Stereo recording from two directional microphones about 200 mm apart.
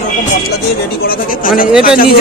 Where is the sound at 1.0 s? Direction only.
45° left (ahead or behind).